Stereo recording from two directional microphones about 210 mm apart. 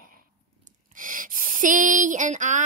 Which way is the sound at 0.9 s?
40° right (ahead or behind).